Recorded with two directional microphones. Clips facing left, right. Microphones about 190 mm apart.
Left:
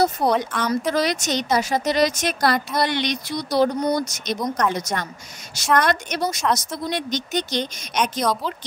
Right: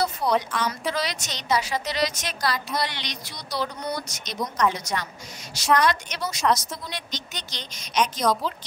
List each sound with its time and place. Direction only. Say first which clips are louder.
0.2 s a woman's voice: left 3 dB; 50° left (ahead or behind)
8.0 s a woman's voice: left 1 dB; centre (ahead or behind)